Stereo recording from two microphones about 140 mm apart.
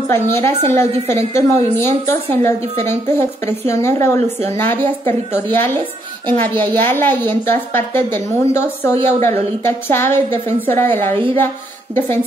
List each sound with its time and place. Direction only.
0.1 s a woman's voice: 15° left (ahead or behind)
2.6 s a woman's voice: 50° right (ahead or behind)
2.9 s a woman's voice: 15° left (ahead or behind)